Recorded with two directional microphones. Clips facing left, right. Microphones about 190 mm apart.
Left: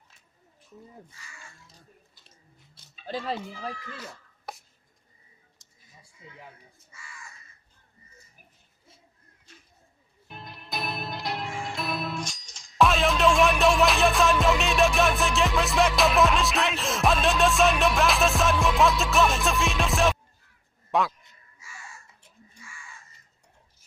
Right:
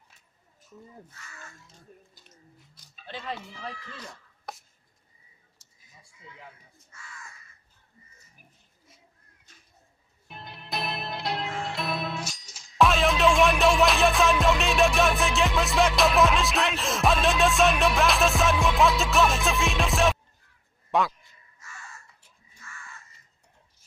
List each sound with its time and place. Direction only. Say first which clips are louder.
2.2 s biting: right 4 dB; 25° left (ahead or behind)
3.1 s speech: left 5 dB; 35° left (ahead or behind)
4.0 s chopping: left 1 dB; 5° left (ahead or behind)
6.9 s speech: right 1 dB; 10° left (ahead or behind)
10.2 s music: even; centre (ahead or behind)
20.9 s a man's voice: even; centre (ahead or behind)
21.6 s crow: even; 10° left (ahead or behind)